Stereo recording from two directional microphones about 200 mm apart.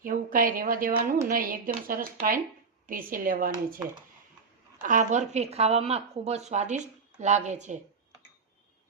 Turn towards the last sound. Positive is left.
turn(degrees=-35)  # may be behind; listen again after turning